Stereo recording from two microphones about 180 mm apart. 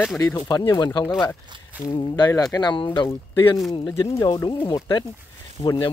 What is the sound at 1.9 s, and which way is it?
Speech, 25° left (ahead or behind).